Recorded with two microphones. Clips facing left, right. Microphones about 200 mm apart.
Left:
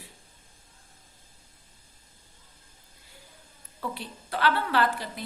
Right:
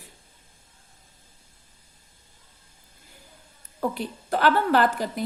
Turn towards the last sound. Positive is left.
turn(degrees=-45)  # may be behind; listen again after turning